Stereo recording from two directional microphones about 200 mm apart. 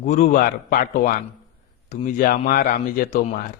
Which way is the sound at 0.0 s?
35° left (ahead or behind).